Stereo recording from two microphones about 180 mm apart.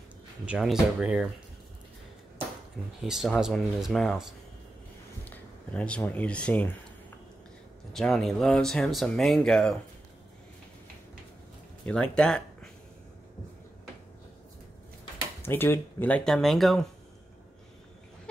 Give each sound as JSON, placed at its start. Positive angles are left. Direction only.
{"t": 0.5, "sound": "speech", "side_deg": -5}
{"t": 3.0, "sound": "speech", "side_deg": 0}
{"t": 7.9, "sound": "speech", "side_deg": 5}
{"t": 11.8, "sound": "speech", "side_deg": 5}
{"t": 15.4, "sound": "speech", "side_deg": 10}